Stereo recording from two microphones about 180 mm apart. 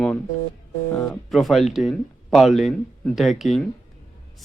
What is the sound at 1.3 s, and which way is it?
Speech, centre (ahead or behind).